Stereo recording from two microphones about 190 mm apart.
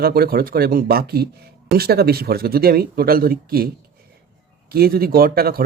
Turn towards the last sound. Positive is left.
turn(degrees=-50)  # may be behind; listen again after turning